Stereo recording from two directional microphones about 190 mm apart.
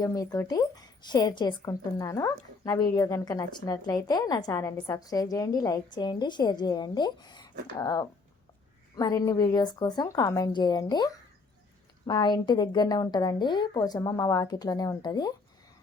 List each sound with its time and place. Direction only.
0.0 s a woman's voice: 20° left (ahead or behind)